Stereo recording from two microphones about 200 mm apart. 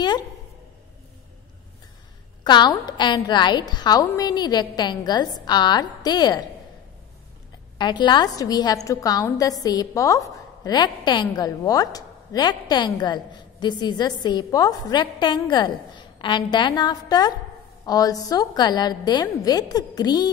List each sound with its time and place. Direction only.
2.4 s a woman's voice: 20° left (ahead or behind)
7.7 s a woman's voice: 20° left (ahead or behind)